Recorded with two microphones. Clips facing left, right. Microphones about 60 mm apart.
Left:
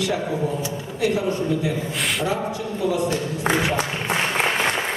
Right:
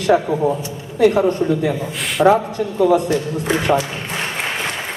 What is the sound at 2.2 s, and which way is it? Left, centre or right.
Speech, right.